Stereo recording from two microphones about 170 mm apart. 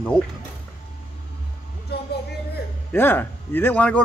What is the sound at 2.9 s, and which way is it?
Speech, 10° left (ahead or behind).